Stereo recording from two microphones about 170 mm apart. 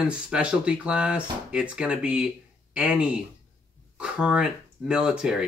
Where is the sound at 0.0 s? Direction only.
5° right (ahead or behind).